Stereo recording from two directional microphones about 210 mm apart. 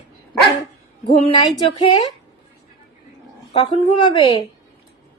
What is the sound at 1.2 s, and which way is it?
Speech, 25° left (ahead or behind).